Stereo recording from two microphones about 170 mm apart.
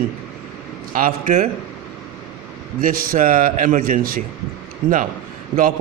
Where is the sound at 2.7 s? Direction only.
55° right (ahead or behind).